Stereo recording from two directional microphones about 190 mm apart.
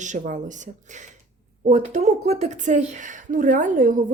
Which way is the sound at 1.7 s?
40° right (ahead or behind).